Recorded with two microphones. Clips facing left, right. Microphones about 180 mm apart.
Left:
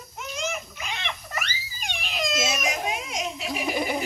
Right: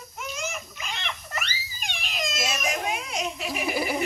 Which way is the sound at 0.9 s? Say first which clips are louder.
Left 1 dB; 10° left (ahead or behind).